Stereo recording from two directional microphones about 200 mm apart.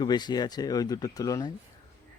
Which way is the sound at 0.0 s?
20° left (ahead or behind).